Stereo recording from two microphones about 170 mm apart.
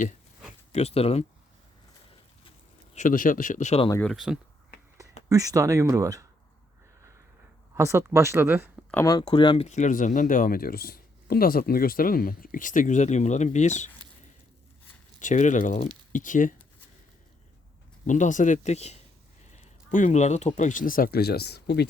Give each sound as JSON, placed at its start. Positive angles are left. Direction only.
{"t": 0.7, "sound": "speech", "side_deg": 40}
{"t": 2.9, "sound": "speech", "side_deg": 50}
{"t": 4.0, "sound": "speech", "side_deg": 0}
{"t": 5.3, "sound": "speech", "side_deg": -20}
{"t": 7.8, "sound": "speech", "side_deg": -15}
{"t": 8.9, "sound": "speech", "side_deg": 15}
{"t": 9.1, "sound": "speech", "side_deg": 30}
{"t": 9.6, "sound": "speech", "side_deg": 45}
{"t": 15.2, "sound": "speech", "side_deg": 45}
{"t": 18.0, "sound": "speech", "side_deg": 45}